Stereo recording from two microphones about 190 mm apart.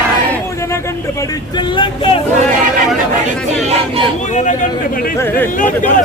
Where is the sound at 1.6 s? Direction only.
25° left (ahead or behind).